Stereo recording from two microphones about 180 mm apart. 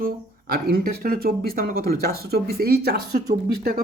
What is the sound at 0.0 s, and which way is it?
Speech, 60° right (ahead or behind).